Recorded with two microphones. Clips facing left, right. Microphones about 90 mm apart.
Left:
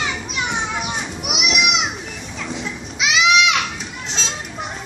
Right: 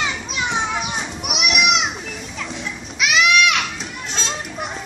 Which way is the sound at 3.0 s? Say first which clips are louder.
Even; 20° left (ahead or behind).